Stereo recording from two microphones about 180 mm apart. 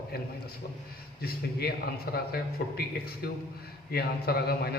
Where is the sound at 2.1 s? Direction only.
60° left (ahead or behind).